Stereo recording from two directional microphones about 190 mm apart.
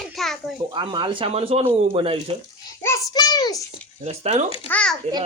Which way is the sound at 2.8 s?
20° left (ahead or behind).